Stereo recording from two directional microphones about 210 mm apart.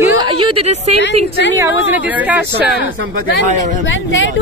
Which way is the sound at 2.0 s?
5° right (ahead or behind).